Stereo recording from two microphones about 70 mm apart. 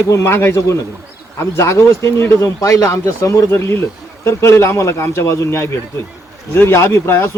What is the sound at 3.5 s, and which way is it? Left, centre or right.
Speech, left.